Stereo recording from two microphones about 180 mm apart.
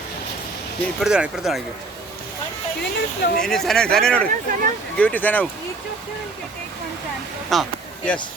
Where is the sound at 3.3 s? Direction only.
5° left (ahead or behind).